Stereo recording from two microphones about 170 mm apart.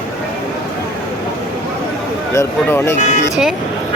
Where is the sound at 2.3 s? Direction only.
15° left (ahead or behind).